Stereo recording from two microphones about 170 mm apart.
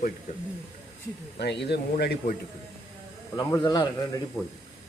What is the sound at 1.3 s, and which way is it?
A man's voice, 85° left.